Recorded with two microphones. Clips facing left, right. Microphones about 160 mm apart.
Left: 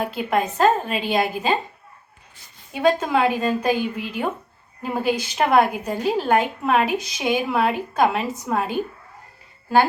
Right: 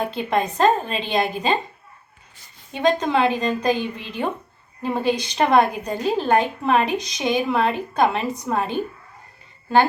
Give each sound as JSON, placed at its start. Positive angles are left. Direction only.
{"t": 0.0, "sound": "a woman's voice", "side_deg": 5}
{"t": 2.7, "sound": "a woman's voice", "side_deg": 10}